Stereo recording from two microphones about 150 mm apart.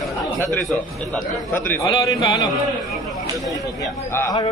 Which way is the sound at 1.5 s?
15° left (ahead or behind).